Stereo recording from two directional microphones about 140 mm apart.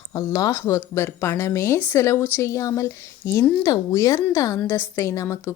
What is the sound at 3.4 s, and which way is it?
Speech, 10° left (ahead or behind).